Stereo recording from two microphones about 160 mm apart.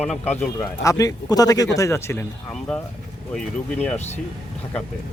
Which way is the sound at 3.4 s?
5° left (ahead or behind).